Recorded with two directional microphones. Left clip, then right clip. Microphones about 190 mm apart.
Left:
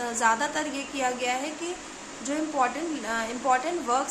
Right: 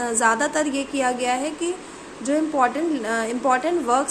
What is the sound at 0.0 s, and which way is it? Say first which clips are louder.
Speech: right 5 dB; 25° right (ahead or behind).